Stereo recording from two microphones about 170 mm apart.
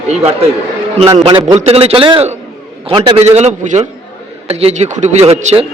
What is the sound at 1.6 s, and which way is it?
A man's voice, 35° right (ahead or behind).